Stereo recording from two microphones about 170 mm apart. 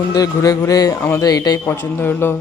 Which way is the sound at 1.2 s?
20° left (ahead or behind).